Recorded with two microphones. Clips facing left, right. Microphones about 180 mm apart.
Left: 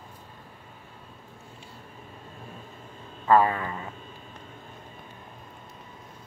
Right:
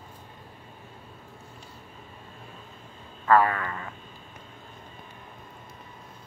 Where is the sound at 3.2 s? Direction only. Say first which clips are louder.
Left 1 dB; 20° left (ahead or behind).